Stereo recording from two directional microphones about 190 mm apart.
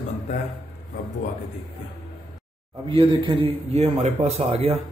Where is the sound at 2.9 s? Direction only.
25° right (ahead or behind).